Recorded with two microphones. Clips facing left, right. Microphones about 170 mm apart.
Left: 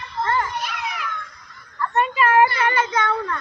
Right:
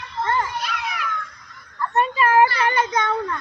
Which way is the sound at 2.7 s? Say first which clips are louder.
Even; 15° right (ahead or behind).